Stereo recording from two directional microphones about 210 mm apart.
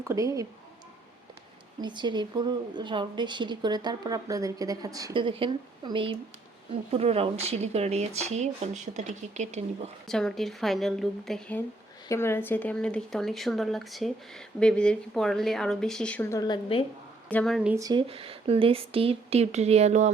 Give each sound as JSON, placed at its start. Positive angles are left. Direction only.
{"t": 0.0, "sound": "speech", "side_deg": -15}
{"t": 1.8, "sound": "a woman's voice", "side_deg": -20}
{"t": 10.1, "sound": "speech", "side_deg": 0}
{"t": 16.4, "sound": "a woman's voice", "side_deg": 25}
{"t": 17.2, "sound": "speech", "side_deg": 5}
{"t": 17.7, "sound": "a woman's voice", "side_deg": -20}